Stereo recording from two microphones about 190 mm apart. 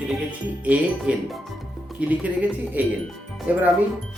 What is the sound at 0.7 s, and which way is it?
Speech, 5° right (ahead or behind).